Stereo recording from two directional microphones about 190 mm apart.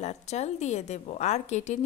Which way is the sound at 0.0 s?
35° left (ahead or behind).